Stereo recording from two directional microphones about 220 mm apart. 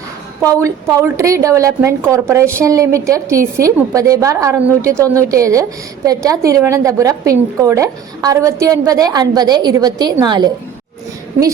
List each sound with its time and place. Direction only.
0.4 s a woman's voice: 15° right (ahead or behind)